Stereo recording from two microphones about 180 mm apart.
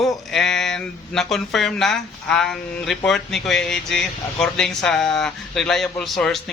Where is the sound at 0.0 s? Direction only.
Centre (ahead or behind).